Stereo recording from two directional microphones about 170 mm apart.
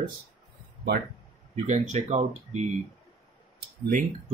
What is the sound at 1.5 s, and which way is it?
Speech, 40° right (ahead or behind).